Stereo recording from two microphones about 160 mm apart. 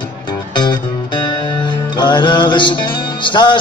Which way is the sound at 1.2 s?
30° left (ahead or behind).